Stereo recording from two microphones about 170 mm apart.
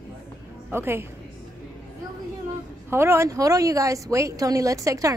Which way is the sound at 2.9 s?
15° right (ahead or behind).